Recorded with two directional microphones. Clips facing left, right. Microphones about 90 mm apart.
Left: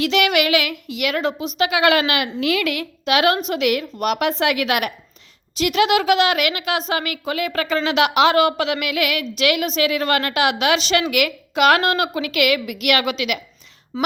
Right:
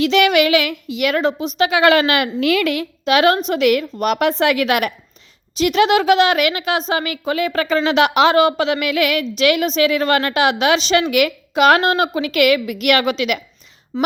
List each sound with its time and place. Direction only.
0.0 s a woman's voice: 30° right (ahead or behind)
1.0 s a woman's voice: 40° right (ahead or behind)
2.7 s a woman's voice: 30° right (ahead or behind)